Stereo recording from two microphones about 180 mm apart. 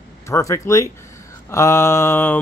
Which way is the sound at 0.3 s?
15° left (ahead or behind).